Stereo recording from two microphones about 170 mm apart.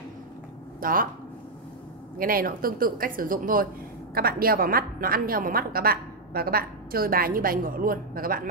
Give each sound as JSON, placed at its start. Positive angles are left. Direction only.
{"t": 0.7, "sound": "speech", "side_deg": -55}
{"t": 2.1, "sound": "a woman's voice", "side_deg": -60}